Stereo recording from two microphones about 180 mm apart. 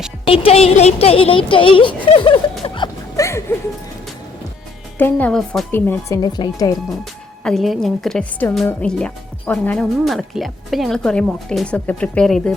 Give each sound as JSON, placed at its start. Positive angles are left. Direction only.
{"t": 0.3, "sound": "a woman's voice", "side_deg": 35}
{"t": 1.5, "sound": "music", "side_deg": 30}
{"t": 4.9, "sound": "a woman's voice", "side_deg": 10}
{"t": 6.2, "sound": "speech", "side_deg": 20}
{"t": 7.0, "sound": "a woman's voice", "side_deg": 0}